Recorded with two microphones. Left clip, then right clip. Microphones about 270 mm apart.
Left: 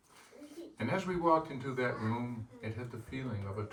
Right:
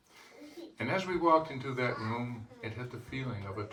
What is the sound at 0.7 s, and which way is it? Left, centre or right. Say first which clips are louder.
Speech: right 3 dB; right.